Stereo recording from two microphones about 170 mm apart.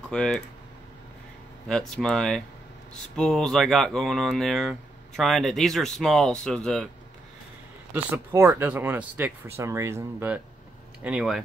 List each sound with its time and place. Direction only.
0.1 s speech: 5° left (ahead or behind)
1.7 s speech: centre (ahead or behind)
7.9 s speech: 15° right (ahead or behind)